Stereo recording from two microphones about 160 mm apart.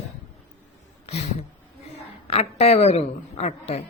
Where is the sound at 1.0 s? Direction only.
40° left (ahead or behind).